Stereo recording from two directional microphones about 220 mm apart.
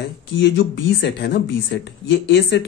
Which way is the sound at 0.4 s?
50° left (ahead or behind).